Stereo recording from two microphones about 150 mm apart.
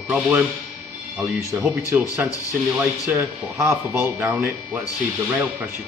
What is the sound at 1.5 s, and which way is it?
Speech, 15° right (ahead or behind).